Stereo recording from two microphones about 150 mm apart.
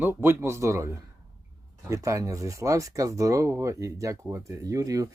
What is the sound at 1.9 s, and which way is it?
Speech, 20° right (ahead or behind).